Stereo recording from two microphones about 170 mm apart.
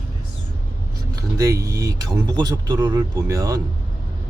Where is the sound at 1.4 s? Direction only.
20° right (ahead or behind).